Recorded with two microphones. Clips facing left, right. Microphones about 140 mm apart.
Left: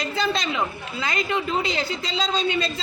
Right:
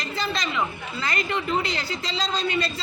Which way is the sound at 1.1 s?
20° left (ahead or behind).